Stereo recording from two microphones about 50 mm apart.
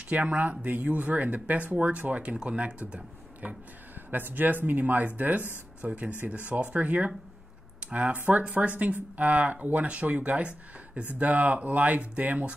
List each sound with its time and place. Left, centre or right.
0.1 s speech: right
4.1 s speech: right